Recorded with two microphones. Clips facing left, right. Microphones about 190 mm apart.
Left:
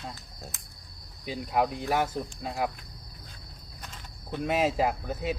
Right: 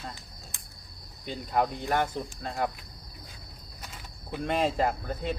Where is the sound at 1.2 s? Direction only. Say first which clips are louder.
Left 1 dB; 5° left (ahead or behind).